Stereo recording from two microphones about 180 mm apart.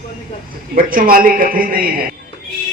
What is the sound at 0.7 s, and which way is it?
A man's voice, 50° right (ahead or behind).